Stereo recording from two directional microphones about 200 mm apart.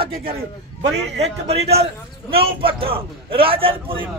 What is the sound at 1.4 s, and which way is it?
A man's voice, 30° right (ahead or behind).